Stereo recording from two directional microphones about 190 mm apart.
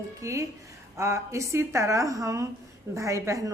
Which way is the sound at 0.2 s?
15° right (ahead or behind).